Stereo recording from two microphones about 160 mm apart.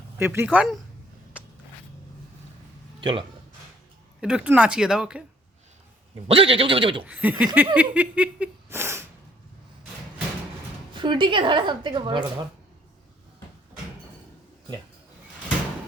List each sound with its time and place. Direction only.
0.2 s a sound: 15° right (ahead or behind)
3.0 s speech: 30° right (ahead or behind)
4.2 s speech: 5° right (ahead or behind)
6.2 s speech: 35° right (ahead or behind)
7.0 s a sound: 10° right (ahead or behind)
10.9 s a woman's voice: 30° right (ahead or behind)